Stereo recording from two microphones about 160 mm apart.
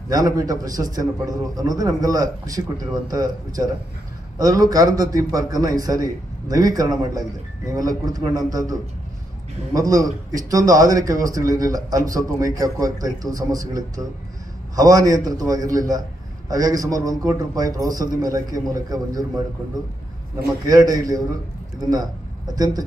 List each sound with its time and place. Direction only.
0.1 s a man's voice: 20° right (ahead or behind)
9.8 s a man's voice: 20° right (ahead or behind)
20.6 s a man's voice: 25° right (ahead or behind)
22.6 s a man's voice: 25° right (ahead or behind)